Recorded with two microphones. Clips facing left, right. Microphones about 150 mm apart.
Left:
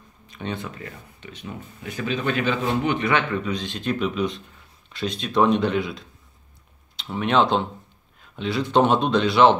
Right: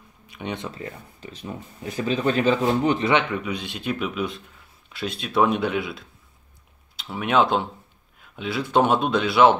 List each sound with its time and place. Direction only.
0.3 s speech: 15° right (ahead or behind)
0.7 s speech: 30° right (ahead or behind)
3.1 s speech: 15° right (ahead or behind)